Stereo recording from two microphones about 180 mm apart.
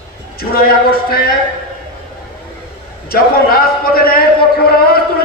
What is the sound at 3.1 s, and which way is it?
A man's voice, 55° left (ahead or behind).